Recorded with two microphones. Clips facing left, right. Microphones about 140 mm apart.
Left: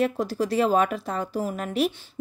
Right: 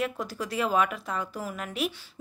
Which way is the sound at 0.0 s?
35° left (ahead or behind).